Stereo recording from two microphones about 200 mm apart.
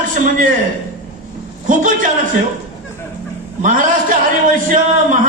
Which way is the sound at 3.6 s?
40° right (ahead or behind).